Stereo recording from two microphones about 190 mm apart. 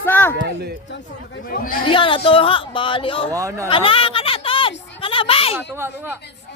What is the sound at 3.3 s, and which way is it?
Speech, 15° right (ahead or behind).